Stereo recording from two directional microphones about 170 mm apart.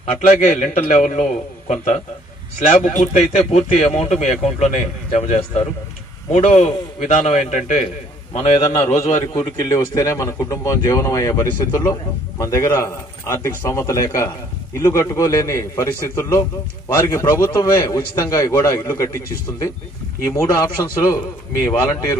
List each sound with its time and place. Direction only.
0.0 s speech: 45° left (ahead or behind)
2.7 s speech: 45° left (ahead or behind)
8.6 s a man's voice: 15° left (ahead or behind)